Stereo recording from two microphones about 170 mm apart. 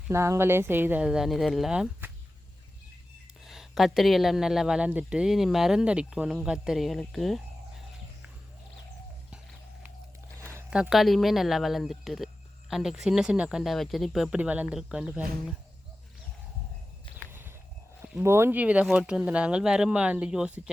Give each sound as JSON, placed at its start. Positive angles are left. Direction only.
{"t": 0.1, "sound": "speech", "side_deg": -15}
{"t": 3.4, "sound": "speech", "side_deg": 0}
{"t": 10.4, "sound": "a sound", "side_deg": -15}
{"t": 10.7, "sound": "speech", "side_deg": -5}
{"t": 18.0, "sound": "speech", "side_deg": -15}